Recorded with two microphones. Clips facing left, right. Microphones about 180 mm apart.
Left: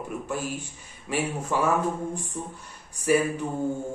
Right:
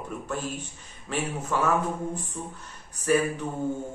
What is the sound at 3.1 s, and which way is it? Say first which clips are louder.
Speech: left 1 dB; 10° left (ahead or behind).